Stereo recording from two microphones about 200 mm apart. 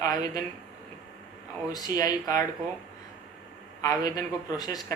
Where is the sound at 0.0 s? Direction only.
20° left (ahead or behind).